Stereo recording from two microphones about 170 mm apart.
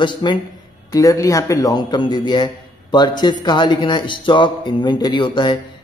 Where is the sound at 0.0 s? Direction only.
30° left (ahead or behind).